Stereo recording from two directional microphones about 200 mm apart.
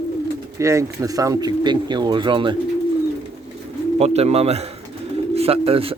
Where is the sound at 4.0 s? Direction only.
30° right (ahead or behind).